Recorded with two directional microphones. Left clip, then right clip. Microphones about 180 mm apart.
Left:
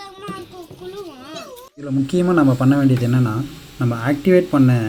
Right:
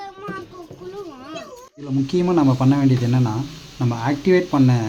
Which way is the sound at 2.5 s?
5° left (ahead or behind).